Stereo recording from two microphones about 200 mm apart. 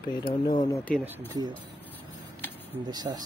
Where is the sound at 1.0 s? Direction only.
20° right (ahead or behind).